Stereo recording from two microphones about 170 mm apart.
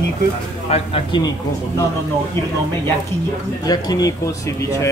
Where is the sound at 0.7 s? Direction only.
35° left (ahead or behind).